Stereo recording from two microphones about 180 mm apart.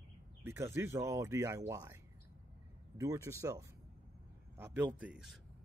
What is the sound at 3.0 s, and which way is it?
Speech, 15° right (ahead or behind).